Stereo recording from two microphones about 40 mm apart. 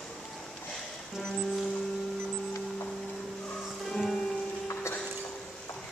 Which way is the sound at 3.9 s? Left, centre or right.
Centre.